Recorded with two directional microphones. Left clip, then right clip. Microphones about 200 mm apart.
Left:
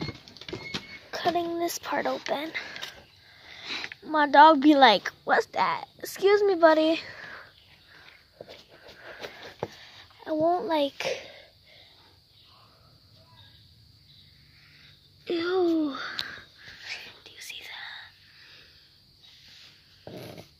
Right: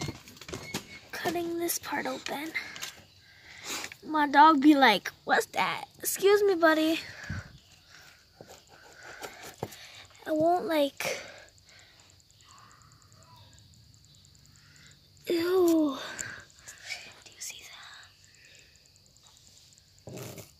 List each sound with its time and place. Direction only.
1.1 s speech: centre (ahead or behind)
3.8 s speech: centre (ahead or behind)
5.0 s a woman's voice: 15° right (ahead or behind)
9.0 s a sound: 20° right (ahead or behind)
15.2 s a sound: 10° right (ahead or behind)
15.9 s sniff: 10° right (ahead or behind)
17.2 s whispering: 10° left (ahead or behind)
20.2 s dog: 20° right (ahead or behind)